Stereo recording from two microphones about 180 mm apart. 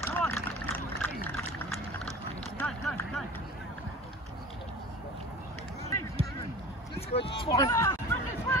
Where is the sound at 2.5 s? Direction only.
10° left (ahead or behind).